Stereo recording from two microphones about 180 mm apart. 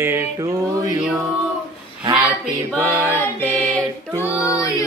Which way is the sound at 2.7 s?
10° right (ahead or behind).